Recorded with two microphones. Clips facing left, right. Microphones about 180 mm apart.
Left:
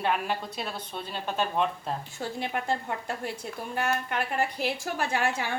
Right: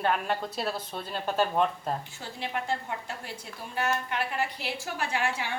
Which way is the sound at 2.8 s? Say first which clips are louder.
Left 4 dB; 50° left (ahead or behind).